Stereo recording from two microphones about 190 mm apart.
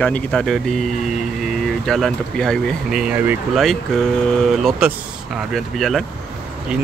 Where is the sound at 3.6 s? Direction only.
Centre (ahead or behind).